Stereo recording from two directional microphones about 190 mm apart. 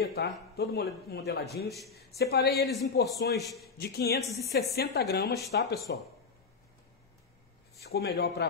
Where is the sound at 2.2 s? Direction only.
55° left (ahead or behind).